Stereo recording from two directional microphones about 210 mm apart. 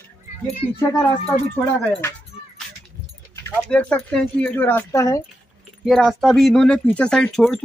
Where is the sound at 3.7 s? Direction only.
5° left (ahead or behind).